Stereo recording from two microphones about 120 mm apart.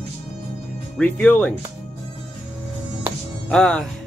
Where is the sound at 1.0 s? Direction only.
10° left (ahead or behind).